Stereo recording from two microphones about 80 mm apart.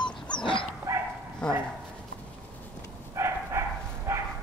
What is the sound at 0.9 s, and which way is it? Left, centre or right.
Bow-wow, right.